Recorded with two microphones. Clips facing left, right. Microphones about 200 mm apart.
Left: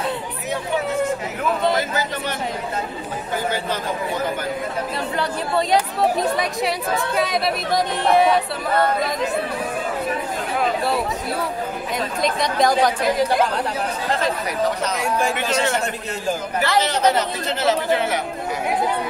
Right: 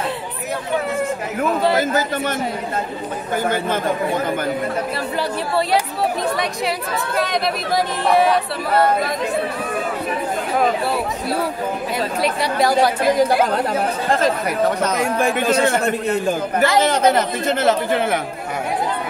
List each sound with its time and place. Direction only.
1.8 s speech: 50° right (ahead or behind)
3.4 s speech: 55° right (ahead or behind)
6.2 s speech: centre (ahead or behind)
12.2 s speech: 5° right (ahead or behind)
14.8 s a man's voice: 55° right (ahead or behind)